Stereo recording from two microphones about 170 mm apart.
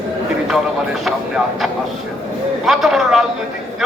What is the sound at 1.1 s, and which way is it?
A man's voice, centre (ahead or behind).